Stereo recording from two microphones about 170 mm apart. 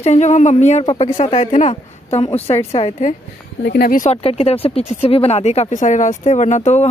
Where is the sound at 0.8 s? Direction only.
30° left (ahead or behind).